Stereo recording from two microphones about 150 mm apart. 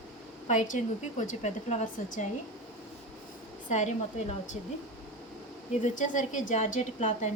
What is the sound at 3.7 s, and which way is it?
Speech, 50° left (ahead or behind).